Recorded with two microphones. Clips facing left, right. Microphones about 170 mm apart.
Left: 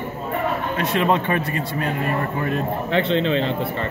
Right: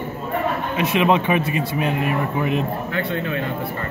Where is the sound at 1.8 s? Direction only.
15° right (ahead or behind).